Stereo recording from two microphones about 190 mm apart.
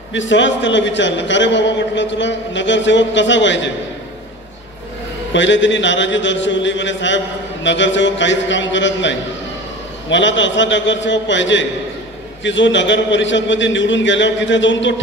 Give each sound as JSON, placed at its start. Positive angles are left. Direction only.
{"t": 0.1, "sound": "a man's voice", "side_deg": 75}
{"t": 5.3, "sound": "a man's voice", "side_deg": 75}